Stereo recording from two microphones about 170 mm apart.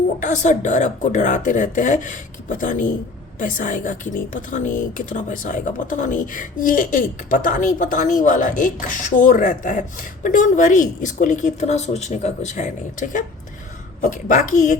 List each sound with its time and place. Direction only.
0.2 s speech: 45° left (ahead or behind)